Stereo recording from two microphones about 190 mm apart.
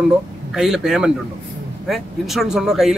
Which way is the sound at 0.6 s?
5° right (ahead or behind).